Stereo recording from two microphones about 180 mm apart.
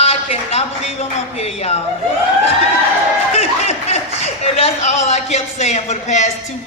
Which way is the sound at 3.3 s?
35° left (ahead or behind).